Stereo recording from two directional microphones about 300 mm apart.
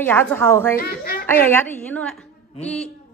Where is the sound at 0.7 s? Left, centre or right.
Left.